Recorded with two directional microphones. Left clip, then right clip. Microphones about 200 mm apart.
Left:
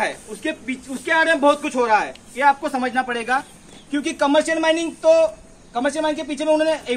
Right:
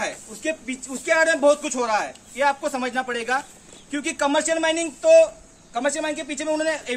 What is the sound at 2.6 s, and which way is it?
Speech, 35° right (ahead or behind).